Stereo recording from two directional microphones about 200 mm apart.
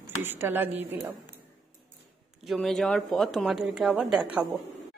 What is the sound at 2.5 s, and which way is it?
Speech, centre (ahead or behind).